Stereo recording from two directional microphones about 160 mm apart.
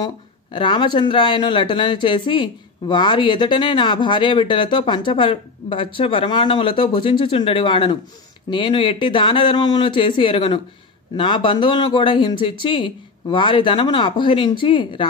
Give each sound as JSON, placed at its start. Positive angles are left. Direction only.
{"t": 0.0, "sound": "speech", "side_deg": 30}